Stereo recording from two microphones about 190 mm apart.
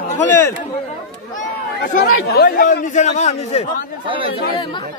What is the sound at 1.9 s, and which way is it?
A man's voice, 55° left (ahead or behind).